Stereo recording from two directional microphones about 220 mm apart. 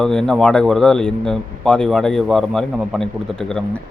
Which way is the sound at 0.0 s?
5° left (ahead or behind).